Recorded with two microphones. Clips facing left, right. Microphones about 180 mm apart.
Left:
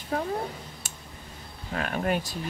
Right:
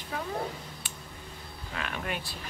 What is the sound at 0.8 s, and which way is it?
Tick, 45° left (ahead or behind).